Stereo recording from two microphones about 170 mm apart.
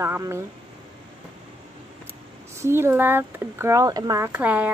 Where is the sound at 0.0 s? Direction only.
15° right (ahead or behind).